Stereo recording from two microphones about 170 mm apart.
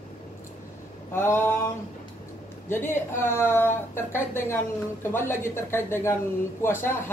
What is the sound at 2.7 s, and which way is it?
A woman's voice, 15° left (ahead or behind).